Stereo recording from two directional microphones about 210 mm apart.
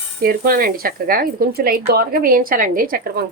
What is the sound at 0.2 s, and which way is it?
Speech, 45° right (ahead or behind).